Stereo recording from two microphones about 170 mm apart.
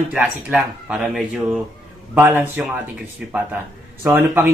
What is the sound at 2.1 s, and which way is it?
Speech, 10° right (ahead or behind).